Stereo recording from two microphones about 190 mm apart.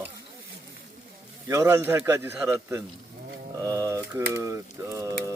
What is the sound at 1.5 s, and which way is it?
Speech, 15° right (ahead or behind).